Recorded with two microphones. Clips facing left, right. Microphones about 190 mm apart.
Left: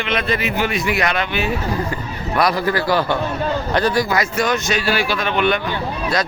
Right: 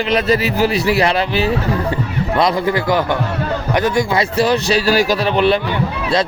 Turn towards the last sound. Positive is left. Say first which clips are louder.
# right 4 dB
turn(degrees=-35)  # may be behind; listen again after turning